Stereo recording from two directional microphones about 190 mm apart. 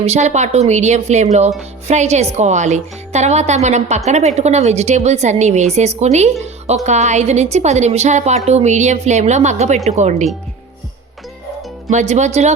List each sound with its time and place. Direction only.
0.0 s a woman's voice: 35° right (ahead or behind)
11.9 s a woman's voice: 40° right (ahead or behind)